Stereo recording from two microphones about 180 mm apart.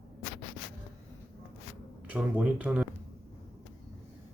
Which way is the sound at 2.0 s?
5° right (ahead or behind).